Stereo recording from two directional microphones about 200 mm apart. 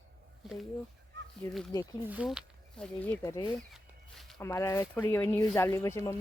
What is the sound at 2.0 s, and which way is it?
Speech, 5° right (ahead or behind).